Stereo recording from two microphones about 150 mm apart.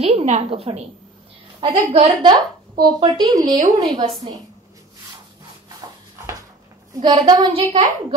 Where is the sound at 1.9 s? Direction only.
35° right (ahead or behind).